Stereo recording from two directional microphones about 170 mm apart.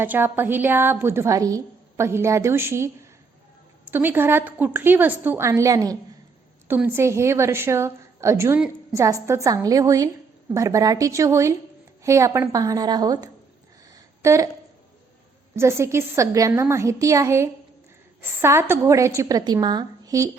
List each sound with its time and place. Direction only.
0.0 s a woman's voice: 10° right (ahead or behind)
3.9 s a woman's voice: 10° right (ahead or behind)
15.5 s a woman's voice: 15° right (ahead or behind)